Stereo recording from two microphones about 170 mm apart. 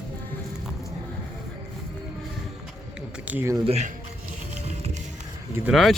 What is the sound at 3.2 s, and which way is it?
Speech, 15° right (ahead or behind).